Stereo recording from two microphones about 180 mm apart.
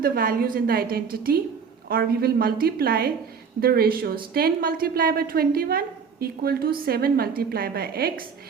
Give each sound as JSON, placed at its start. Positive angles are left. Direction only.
{"t": 0.0, "sound": "a woman's voice", "side_deg": -55}